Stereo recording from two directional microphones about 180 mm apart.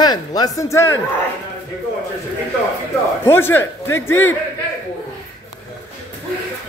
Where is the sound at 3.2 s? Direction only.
10° left (ahead or behind).